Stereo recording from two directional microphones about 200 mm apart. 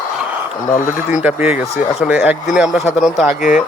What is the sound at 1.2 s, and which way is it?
Speech, 10° right (ahead or behind).